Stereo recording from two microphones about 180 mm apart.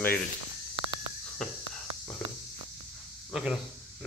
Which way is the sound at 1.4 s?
5° left (ahead or behind).